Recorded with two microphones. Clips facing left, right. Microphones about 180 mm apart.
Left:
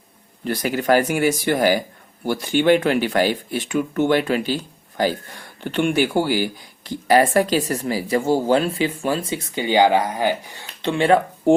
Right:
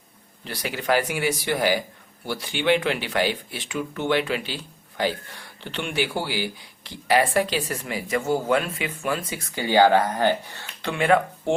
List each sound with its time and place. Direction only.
0.4 s speech: 45° left (ahead or behind); by 10.9 s 15° left (ahead or behind)
10.9 s speech: 30° left (ahead or behind)